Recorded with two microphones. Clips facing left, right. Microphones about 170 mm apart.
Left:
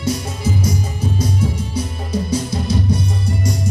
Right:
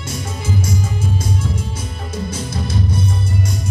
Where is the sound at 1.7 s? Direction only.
50° right (ahead or behind).